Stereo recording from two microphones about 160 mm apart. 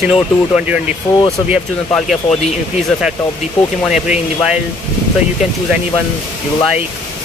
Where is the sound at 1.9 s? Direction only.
5° left (ahead or behind).